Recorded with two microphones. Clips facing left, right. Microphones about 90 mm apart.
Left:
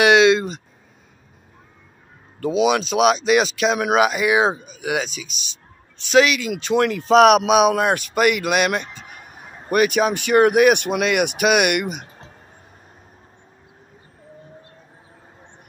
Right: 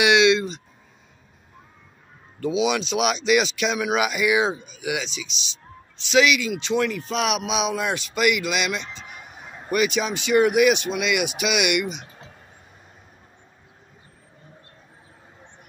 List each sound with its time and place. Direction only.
0.0 s speech: 40° left (ahead or behind)
2.4 s speech: 45° left (ahead or behind)
6.6 s speech: 50° left (ahead or behind)
6.9 s speech: 70° left (ahead or behind); by 10.8 s 45° left (ahead or behind)
10.8 s speech: 65° left (ahead or behind); by 12.1 s 45° left (ahead or behind)